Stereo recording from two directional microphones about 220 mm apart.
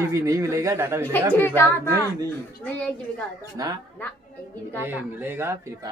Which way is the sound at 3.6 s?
15° right (ahead or behind).